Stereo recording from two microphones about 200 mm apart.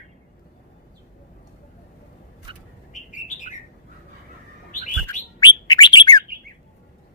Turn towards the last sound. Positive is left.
turn(degrees=20)  # may be behind; listen again after turning